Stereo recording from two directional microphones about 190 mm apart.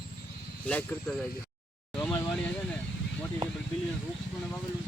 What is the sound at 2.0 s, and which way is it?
Vehicle, 20° left (ahead or behind).